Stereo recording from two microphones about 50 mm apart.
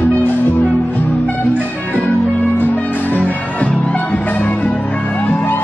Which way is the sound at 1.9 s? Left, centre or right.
Left.